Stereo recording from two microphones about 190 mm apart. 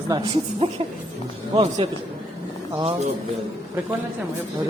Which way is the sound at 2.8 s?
25° right (ahead or behind).